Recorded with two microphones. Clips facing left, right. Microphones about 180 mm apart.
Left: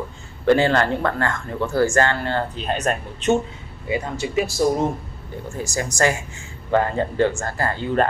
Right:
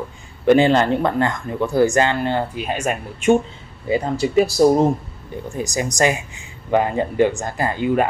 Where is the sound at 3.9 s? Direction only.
35° right (ahead or behind).